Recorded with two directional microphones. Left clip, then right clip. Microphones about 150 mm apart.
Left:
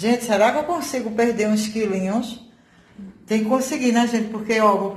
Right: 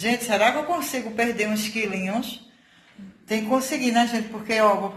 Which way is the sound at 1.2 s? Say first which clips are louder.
Left 4 dB; 35° left (ahead or behind).